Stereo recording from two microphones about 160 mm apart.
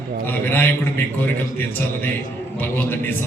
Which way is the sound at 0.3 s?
10° left (ahead or behind).